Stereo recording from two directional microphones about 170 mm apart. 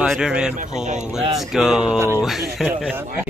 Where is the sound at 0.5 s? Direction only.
45° right (ahead or behind).